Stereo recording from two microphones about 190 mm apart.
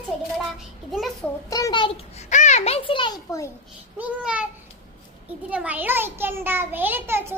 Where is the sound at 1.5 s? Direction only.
20° left (ahead or behind).